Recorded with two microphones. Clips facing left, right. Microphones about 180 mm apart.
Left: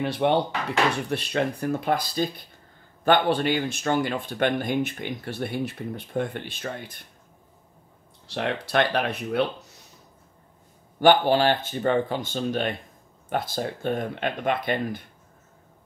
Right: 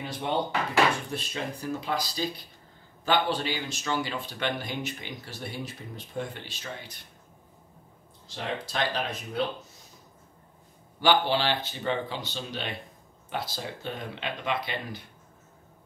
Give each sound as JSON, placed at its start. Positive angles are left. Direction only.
{"t": 0.0, "sound": "speech", "side_deg": 65}
{"t": 8.3, "sound": "speech", "side_deg": 65}
{"t": 11.0, "sound": "speech", "side_deg": 50}